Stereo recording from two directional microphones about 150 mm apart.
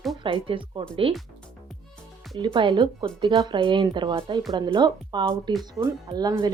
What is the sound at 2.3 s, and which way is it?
Speech, 30° right (ahead or behind).